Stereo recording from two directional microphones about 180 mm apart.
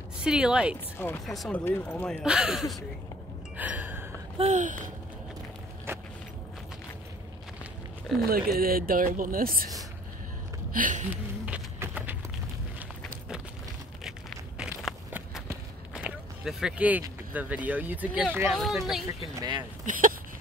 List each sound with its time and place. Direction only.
0.2 s speech: 5° right (ahead or behind)
1.0 s speech: 10° left (ahead or behind)
2.2 s speech: 5° right (ahead or behind)
3.5 s gasp: 10° right (ahead or behind)
4.4 s speech: 40° right (ahead or behind)
5.9 s walk: 15° right (ahead or behind)
8.3 s speech: 55° right (ahead or behind)
10.7 s a sound: 45° right (ahead or behind)
11.1 s a sound: 10° right (ahead or behind)
14.6 s walk: centre (ahead or behind)
17.3 s speech: 10° right (ahead or behind)
19.3 s speech: 20° right (ahead or behind)
19.8 s a sound: 50° right (ahead or behind)